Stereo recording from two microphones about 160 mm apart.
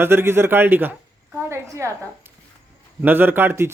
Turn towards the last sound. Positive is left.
turn(degrees=-15)  # may be behind; listen again after turning